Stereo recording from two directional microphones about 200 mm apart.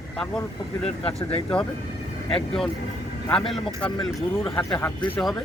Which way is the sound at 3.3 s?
5° left (ahead or behind).